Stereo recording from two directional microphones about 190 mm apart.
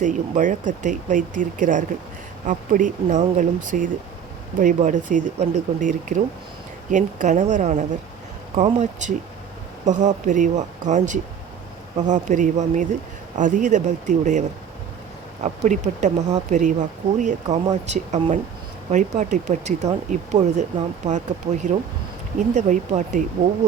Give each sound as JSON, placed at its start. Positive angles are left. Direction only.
{"t": 0.0, "sound": "speech", "side_deg": -40}
{"t": 15.4, "sound": "speech", "side_deg": -35}